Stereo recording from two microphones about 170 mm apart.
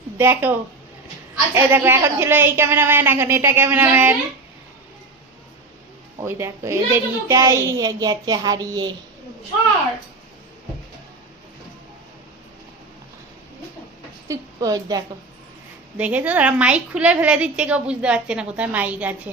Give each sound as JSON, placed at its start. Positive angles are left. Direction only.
{"t": 0.2, "sound": "a woman's voice", "side_deg": -15}
{"t": 1.5, "sound": "a woman's voice", "side_deg": -10}
{"t": 6.2, "sound": "a child's voice", "side_deg": -15}
{"t": 14.3, "sound": "a woman's voice", "side_deg": -20}
{"t": 16.0, "sound": "a woman's voice", "side_deg": -10}